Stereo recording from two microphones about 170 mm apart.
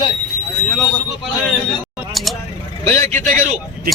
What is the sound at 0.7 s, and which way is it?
Speech, centre (ahead or behind).